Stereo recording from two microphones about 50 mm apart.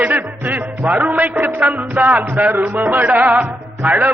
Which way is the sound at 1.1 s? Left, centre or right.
Right.